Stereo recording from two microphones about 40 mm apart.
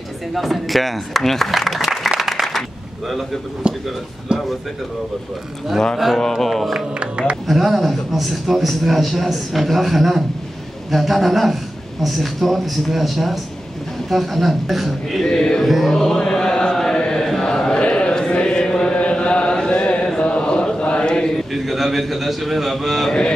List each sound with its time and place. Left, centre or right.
0.3 s a man's voice: centre
2.1 s applause: centre
3.6 s speech: right
6.1 s a man's voice: centre
7.0 s speech: right
7.4 s a man's voice: centre
15.3 s chant: centre
15.6 s a man's voice: centre
15.9 s chant: centre
17.7 s a sound: left
18.3 s chant: left
19.0 s a sound: left
20.2 s mantra: left
21.5 s a man's voice: centre